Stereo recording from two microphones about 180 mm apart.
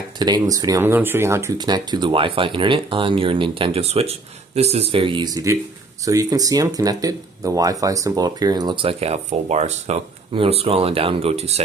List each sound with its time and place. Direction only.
0.2 s speech: 20° right (ahead or behind)